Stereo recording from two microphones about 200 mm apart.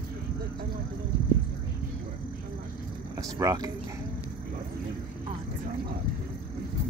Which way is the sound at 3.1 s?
15° right (ahead or behind).